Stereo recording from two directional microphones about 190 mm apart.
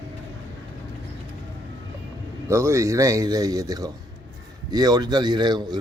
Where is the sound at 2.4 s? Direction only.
15° right (ahead or behind).